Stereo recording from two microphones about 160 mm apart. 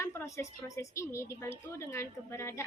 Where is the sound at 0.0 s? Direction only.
15° left (ahead or behind).